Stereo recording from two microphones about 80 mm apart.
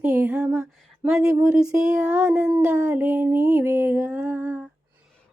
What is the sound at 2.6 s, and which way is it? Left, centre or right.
Speech, centre.